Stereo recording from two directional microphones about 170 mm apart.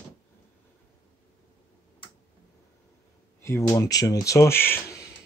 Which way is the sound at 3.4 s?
15° left (ahead or behind).